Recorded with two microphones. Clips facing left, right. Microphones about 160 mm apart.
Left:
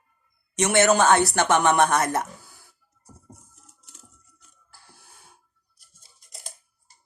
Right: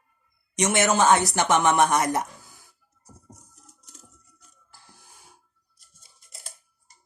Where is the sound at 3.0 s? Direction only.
40° right (ahead or behind).